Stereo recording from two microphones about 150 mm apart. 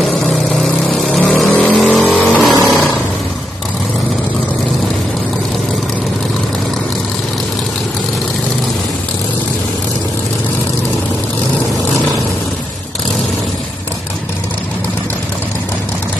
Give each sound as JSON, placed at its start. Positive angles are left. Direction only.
{"t": 0.0, "sound": "vehicle", "side_deg": 0}
{"t": 2.5, "sound": "vehicle", "side_deg": -10}